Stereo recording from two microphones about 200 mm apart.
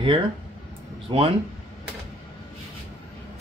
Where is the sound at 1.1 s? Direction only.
30° right (ahead or behind).